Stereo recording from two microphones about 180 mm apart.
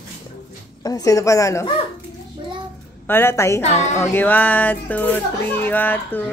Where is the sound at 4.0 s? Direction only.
10° left (ahead or behind).